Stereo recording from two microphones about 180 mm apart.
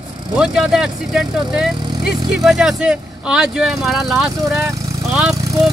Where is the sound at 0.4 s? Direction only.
5° right (ahead or behind).